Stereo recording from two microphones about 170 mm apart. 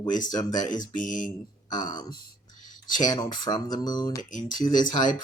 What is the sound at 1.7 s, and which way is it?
Speech, 25° left (ahead or behind).